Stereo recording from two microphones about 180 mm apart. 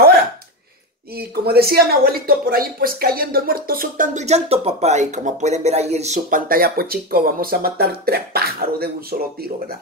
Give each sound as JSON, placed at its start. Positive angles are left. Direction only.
{"t": 1.1, "sound": "speech", "side_deg": -60}